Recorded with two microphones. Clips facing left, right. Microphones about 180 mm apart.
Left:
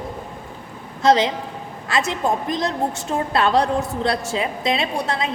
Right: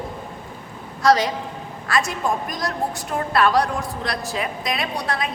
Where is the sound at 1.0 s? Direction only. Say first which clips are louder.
Left 1 dB; 25° left (ahead or behind).